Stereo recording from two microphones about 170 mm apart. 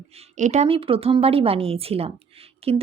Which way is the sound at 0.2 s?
40° right (ahead or behind).